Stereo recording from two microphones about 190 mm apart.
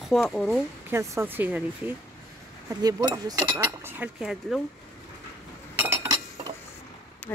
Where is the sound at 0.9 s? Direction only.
15° right (ahead or behind).